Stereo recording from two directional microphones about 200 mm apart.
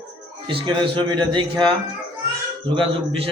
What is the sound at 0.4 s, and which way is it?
A man's voice, 25° right (ahead or behind).